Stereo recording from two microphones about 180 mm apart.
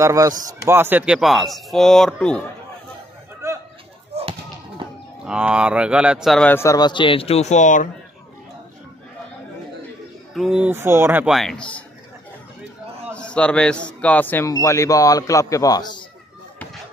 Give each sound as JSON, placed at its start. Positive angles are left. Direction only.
{"t": 0.0, "sound": "speech", "side_deg": -20}
{"t": 4.1, "sound": "basketball bounce", "side_deg": -35}
{"t": 5.2, "sound": "speech", "side_deg": -5}
{"t": 6.5, "sound": "a man's voice", "side_deg": 15}
{"t": 10.3, "sound": "speech", "side_deg": -5}
{"t": 11.3, "sound": "speech", "side_deg": 5}
{"t": 13.1, "sound": "a man's voice", "side_deg": 5}